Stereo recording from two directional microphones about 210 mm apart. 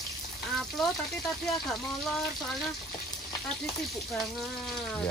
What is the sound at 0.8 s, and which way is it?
Speech, centre (ahead or behind).